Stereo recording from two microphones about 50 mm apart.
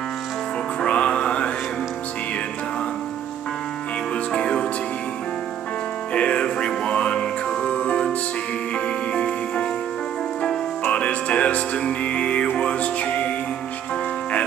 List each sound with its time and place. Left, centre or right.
0.8 s music: left
4.3 s music: centre
6.1 s music: left
10.9 s music: left